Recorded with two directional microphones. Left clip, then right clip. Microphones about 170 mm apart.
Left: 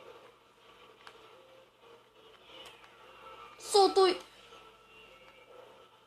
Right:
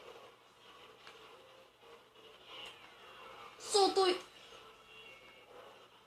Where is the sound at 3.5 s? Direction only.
45° left (ahead or behind).